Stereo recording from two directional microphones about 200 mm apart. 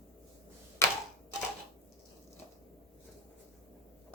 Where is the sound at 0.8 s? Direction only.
15° left (ahead or behind).